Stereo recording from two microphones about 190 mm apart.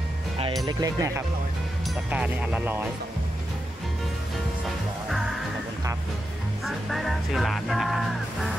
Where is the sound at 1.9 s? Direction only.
5° right (ahead or behind).